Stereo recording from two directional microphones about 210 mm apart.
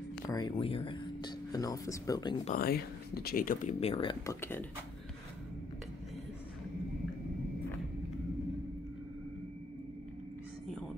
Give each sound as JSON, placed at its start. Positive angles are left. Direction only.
{"t": 0.3, "sound": "a sound", "side_deg": 20}
{"t": 2.4, "sound": "speech", "side_deg": 45}
{"t": 4.4, "sound": "speech", "side_deg": 10}